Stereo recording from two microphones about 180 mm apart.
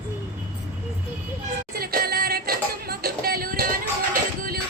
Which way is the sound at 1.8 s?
55° right (ahead or behind).